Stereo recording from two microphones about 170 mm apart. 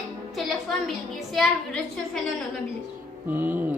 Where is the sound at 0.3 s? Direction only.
Centre (ahead or behind).